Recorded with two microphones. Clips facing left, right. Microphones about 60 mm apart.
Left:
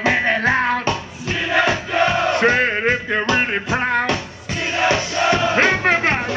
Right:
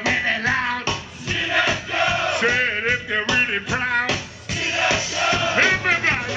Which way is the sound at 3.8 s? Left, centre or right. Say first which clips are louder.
Left 2 dB; centre.